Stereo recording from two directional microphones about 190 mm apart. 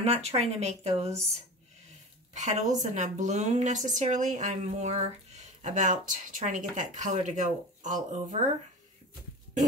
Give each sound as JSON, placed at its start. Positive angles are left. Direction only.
{"t": 0.0, "sound": "speech", "side_deg": -35}
{"t": 2.3, "sound": "speech", "side_deg": -40}